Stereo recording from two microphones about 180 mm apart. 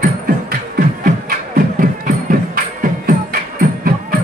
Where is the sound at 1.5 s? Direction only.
50° right (ahead or behind).